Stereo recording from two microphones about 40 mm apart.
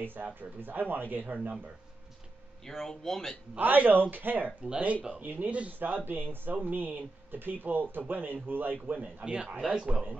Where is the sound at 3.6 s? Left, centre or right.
Right.